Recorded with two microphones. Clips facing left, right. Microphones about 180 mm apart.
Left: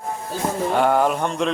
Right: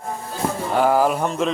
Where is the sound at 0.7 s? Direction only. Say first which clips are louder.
Right 2 dB; centre (ahead or behind).